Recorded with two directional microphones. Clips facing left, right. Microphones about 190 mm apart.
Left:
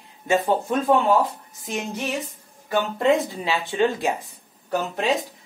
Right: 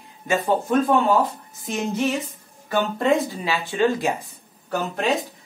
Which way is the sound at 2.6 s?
15° left (ahead or behind).